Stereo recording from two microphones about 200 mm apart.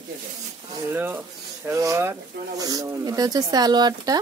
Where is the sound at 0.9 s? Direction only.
10° right (ahead or behind).